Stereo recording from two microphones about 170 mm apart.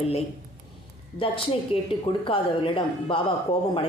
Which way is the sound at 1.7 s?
30° left (ahead or behind).